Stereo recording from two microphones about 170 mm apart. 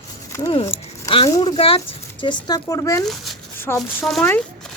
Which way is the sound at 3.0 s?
Centre (ahead or behind).